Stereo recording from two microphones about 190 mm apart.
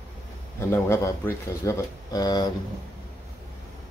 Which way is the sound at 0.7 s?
15° left (ahead or behind).